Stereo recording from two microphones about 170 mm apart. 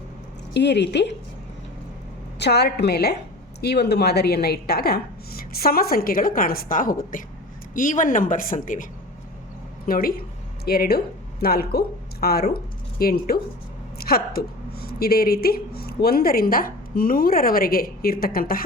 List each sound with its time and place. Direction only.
0.5 s speech: 90° left
2.4 s a woman's voice: 75° left (ahead or behind)